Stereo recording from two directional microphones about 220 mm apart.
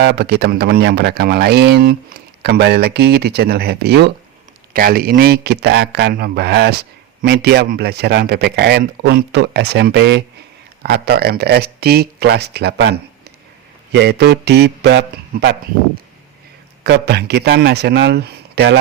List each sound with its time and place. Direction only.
0.0 s speech: 50° right (ahead or behind)
16.8 s speech: 50° right (ahead or behind)